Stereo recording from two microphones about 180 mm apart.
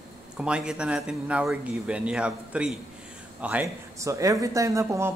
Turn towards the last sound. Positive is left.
turn(degrees=-15)  # may be behind; listen again after turning